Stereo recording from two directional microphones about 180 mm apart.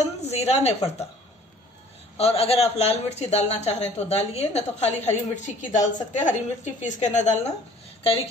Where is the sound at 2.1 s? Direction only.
35° left (ahead or behind).